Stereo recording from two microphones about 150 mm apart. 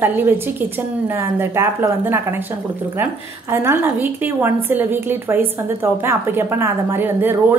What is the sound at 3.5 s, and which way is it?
A woman's voice, 15° right (ahead or behind).